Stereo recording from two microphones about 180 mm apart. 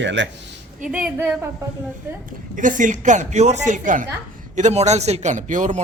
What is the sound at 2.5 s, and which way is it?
A man's voice, 45° right (ahead or behind).